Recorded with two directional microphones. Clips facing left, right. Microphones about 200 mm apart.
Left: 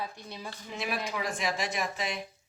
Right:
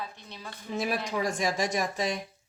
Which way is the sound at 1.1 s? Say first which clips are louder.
Right 4 dB; 40° right (ahead or behind).